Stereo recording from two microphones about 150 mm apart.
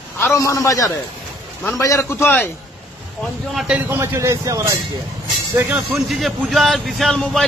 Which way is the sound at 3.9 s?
20° right (ahead or behind).